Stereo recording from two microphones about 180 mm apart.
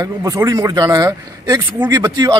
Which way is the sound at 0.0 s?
20° right (ahead or behind).